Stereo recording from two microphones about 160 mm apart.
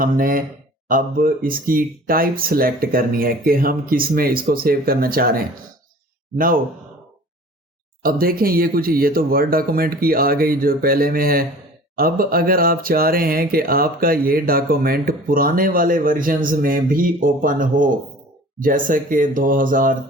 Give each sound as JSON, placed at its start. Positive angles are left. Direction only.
{"t": 0.0, "sound": "speech", "side_deg": -60}
{"t": 8.0, "sound": "speech", "side_deg": -65}